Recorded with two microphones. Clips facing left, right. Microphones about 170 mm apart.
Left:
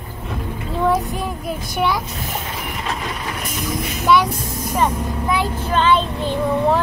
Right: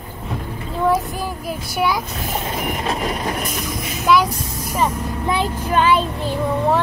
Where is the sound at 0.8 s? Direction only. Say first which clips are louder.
Even; centre (ahead or behind).